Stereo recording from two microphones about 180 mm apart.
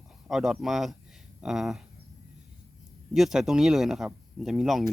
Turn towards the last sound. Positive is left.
turn(degrees=0)  # may be behind; listen again after turning